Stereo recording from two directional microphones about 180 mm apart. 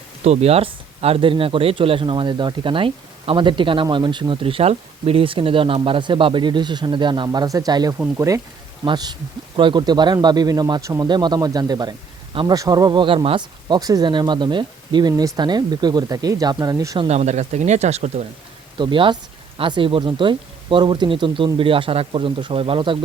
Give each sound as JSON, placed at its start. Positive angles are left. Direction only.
{"t": 0.2, "sound": "speech", "side_deg": -35}
{"t": 8.8, "sound": "speech", "side_deg": -25}
{"t": 17.1, "sound": "speech", "side_deg": -40}
{"t": 18.8, "sound": "speech", "side_deg": -25}